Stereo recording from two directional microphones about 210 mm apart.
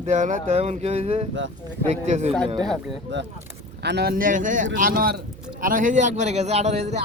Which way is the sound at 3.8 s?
50° right (ahead or behind).